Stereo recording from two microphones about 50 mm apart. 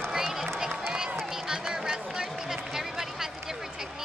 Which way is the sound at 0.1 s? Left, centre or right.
Centre.